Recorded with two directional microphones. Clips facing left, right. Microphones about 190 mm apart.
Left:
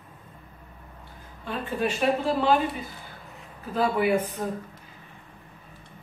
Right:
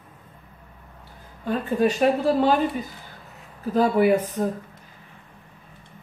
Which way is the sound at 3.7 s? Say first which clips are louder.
Right 5 dB; 40° right (ahead or behind).